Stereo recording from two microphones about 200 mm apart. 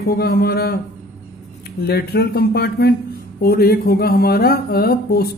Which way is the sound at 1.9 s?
50° left (ahead or behind).